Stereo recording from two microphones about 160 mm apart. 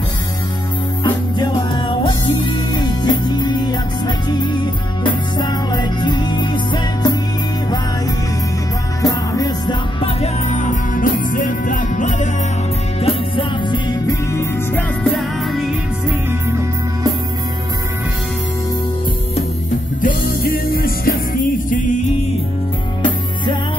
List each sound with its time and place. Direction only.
1.0 s music: 30° left (ahead or behind)
9.0 s music: 25° left (ahead or behind); by 12.3 s 50° left (ahead or behind)
13.0 s music: 30° left (ahead or behind)
14.7 s music: 10° left (ahead or behind)
15.1 s music: centre (ahead or behind)
20.0 s music: 65° left (ahead or behind)
21.6 s music: 55° left (ahead or behind)